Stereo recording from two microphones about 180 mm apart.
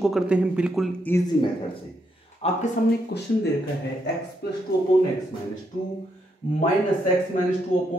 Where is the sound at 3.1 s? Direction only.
60° left (ahead or behind).